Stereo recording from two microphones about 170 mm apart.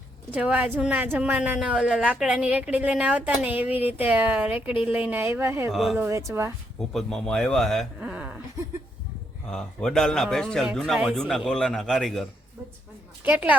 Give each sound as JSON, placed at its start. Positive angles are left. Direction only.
{"t": 0.3, "sound": "a woman's voice", "side_deg": -10}
{"t": 5.7, "sound": "speech", "side_deg": 0}
{"t": 6.0, "sound": "a woman's voice", "side_deg": -20}
{"t": 6.7, "sound": "speech", "side_deg": 0}
{"t": 9.5, "sound": "a woman's voice", "side_deg": 5}